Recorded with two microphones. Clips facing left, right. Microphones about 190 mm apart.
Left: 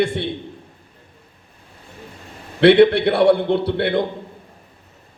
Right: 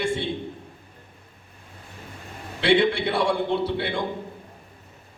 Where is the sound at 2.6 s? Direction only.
60° left (ahead or behind).